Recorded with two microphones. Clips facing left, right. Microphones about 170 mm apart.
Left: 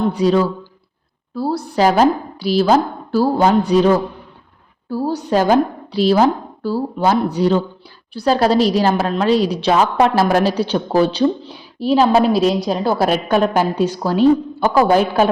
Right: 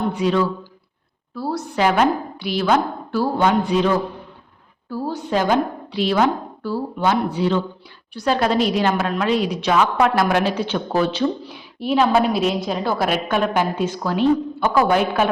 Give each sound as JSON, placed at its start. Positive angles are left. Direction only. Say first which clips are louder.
{"t": 0.1, "sound": "a woman's voice", "louder": "left 4 dB", "side_deg": 35}